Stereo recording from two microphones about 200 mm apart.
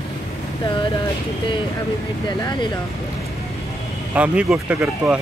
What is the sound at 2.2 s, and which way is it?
Speech, 20° left (ahead or behind).